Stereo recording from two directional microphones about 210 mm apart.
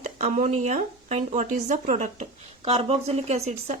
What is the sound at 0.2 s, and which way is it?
A woman's voice, 35° right (ahead or behind).